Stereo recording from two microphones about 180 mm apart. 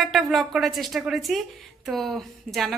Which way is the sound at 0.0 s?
Centre (ahead or behind).